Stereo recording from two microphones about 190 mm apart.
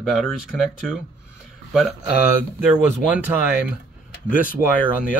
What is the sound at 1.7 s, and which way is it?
Speech, centre (ahead or behind).